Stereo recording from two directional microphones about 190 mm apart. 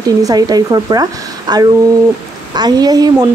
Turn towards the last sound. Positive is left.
turn(degrees=-20)  # may be behind; listen again after turning